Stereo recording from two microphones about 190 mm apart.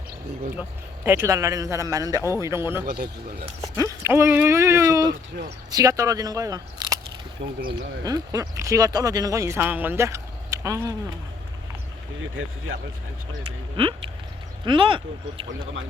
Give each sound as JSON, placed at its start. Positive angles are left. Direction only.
{"t": 1.0, "sound": "speech", "side_deg": -10}
{"t": 2.8, "sound": "speech", "side_deg": -50}
{"t": 4.0, "sound": "speech", "side_deg": -10}
{"t": 7.4, "sound": "speech", "side_deg": -60}
{"t": 8.0, "sound": "speech", "side_deg": -20}
{"t": 12.2, "sound": "speech", "side_deg": -90}
{"t": 13.8, "sound": "speech", "side_deg": -30}